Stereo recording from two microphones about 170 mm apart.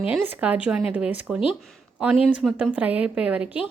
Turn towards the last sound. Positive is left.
turn(degrees=-10)  # may be behind; listen again after turning